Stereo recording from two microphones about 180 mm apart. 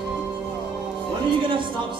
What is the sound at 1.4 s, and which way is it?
Speech, 25° right (ahead or behind).